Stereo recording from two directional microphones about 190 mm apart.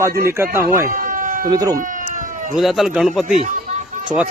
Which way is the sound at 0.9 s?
45° right (ahead or behind).